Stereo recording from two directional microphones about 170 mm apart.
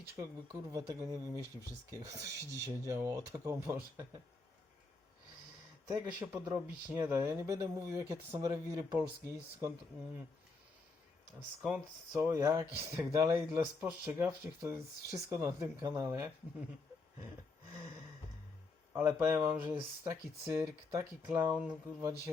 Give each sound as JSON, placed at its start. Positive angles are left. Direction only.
{"t": 0.2, "sound": "speech", "side_deg": -20}
{"t": 5.9, "sound": "speech", "side_deg": -15}
{"t": 11.6, "sound": "speech", "side_deg": -10}
{"t": 18.9, "sound": "speech", "side_deg": -10}